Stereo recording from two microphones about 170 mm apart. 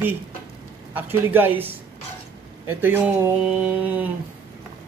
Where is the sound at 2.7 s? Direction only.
10° right (ahead or behind).